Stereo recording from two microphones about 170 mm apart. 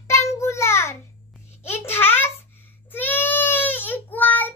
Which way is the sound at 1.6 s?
15° left (ahead or behind).